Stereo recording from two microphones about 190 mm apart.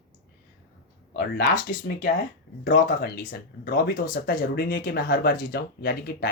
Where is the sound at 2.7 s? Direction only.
50° left (ahead or behind).